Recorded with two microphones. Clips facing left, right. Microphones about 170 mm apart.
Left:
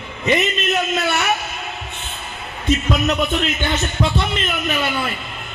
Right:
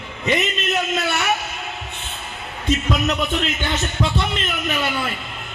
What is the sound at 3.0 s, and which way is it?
A man's voice, 55° left (ahead or behind).